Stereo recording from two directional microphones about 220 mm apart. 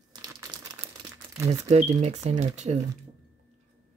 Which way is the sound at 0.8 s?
10° right (ahead or behind).